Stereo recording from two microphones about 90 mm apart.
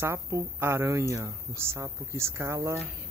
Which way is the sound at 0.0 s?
35° right (ahead or behind).